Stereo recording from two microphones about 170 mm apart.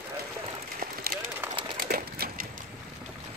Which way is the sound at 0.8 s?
60° right (ahead or behind).